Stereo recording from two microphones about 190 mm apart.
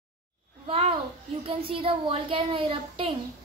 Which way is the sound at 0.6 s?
30° right (ahead or behind).